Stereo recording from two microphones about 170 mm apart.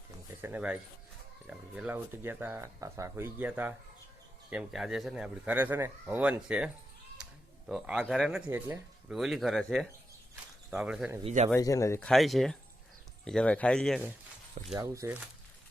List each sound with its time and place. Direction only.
0.4 s speech: 10° right (ahead or behind)
7.2 s a sound: 5° right (ahead or behind)
7.7 s speech: 5° right (ahead or behind)
9.1 s speech: centre (ahead or behind)
11.2 s speech: 40° right (ahead or behind)
11.5 s speech: 20° left (ahead or behind)
11.9 s speech: 5° left (ahead or behind)
14.8 s speech: 15° right (ahead or behind)